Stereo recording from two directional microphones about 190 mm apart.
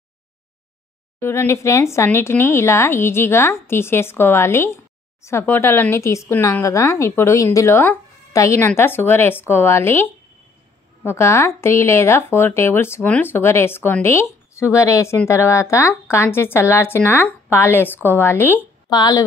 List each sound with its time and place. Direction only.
1.2 s speech: 15° left (ahead or behind)
11.1 s a woman's voice: 15° left (ahead or behind)